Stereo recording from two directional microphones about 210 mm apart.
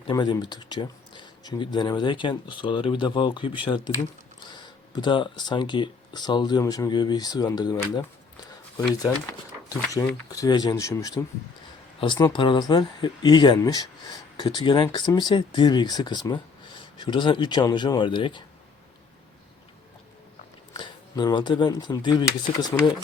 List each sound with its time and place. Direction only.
0.1 s speech: 20° left (ahead or behind)
9.6 s speech: 15° left (ahead or behind)
20.7 s speech: 20° left (ahead or behind)